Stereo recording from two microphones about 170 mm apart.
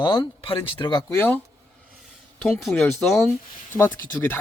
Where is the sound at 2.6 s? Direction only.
Centre (ahead or behind).